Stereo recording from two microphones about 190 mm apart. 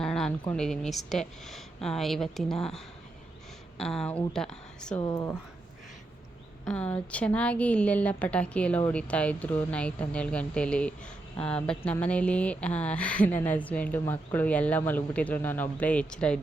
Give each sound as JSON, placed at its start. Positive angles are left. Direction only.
{"t": 0.0, "sound": "a sound", "side_deg": 5}
{"t": 0.5, "sound": "speech", "side_deg": 5}
{"t": 4.9, "sound": "speech", "side_deg": 20}
{"t": 6.7, "sound": "speech", "side_deg": 5}